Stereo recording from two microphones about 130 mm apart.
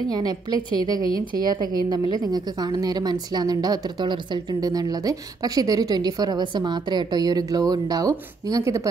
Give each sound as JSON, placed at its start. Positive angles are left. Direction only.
{"t": 0.1, "sound": "a woman's voice", "side_deg": -30}